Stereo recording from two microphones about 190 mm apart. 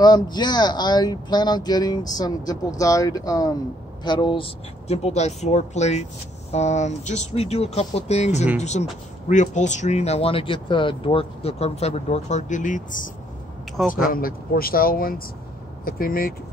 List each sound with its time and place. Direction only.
0.0 s speech: 20° left (ahead or behind); by 16.3 s 50° left (ahead or behind)